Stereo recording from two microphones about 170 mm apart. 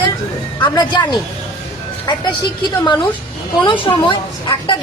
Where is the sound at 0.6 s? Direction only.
25° left (ahead or behind).